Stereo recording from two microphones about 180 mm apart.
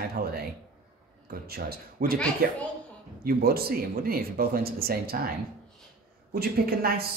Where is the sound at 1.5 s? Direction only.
55° right (ahead or behind).